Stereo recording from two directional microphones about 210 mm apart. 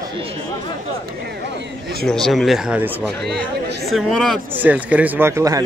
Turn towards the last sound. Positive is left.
turn(degrees=-15)  # may be behind; listen again after turning